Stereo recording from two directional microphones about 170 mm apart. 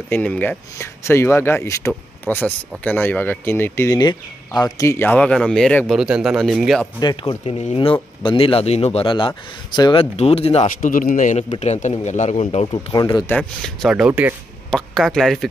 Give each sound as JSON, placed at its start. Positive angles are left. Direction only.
{"t": 0.1, "sound": "speech", "side_deg": 10}
{"t": 7.0, "sound": "speech", "side_deg": 25}
{"t": 10.1, "sound": "speech", "side_deg": 35}
{"t": 10.8, "sound": "speech", "side_deg": 55}
{"t": 12.7, "sound": "speech", "side_deg": 25}
{"t": 13.4, "sound": "speech", "side_deg": 0}